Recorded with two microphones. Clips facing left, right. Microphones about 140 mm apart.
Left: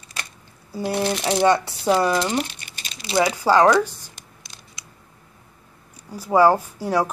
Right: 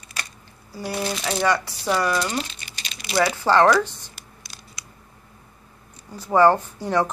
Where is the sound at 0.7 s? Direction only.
25° left (ahead or behind).